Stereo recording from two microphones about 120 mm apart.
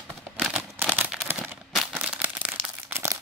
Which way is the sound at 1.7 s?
5° right (ahead or behind).